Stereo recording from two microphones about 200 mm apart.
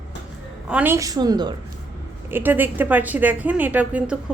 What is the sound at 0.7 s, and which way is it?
Speech, 10° right (ahead or behind).